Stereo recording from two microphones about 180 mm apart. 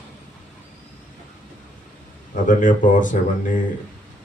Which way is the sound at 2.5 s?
45° left (ahead or behind).